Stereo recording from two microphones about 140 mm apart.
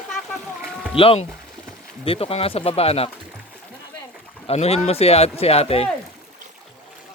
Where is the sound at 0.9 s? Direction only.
45° left (ahead or behind).